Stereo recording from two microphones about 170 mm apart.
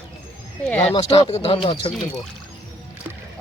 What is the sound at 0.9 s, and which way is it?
Speech, 40° left (ahead or behind).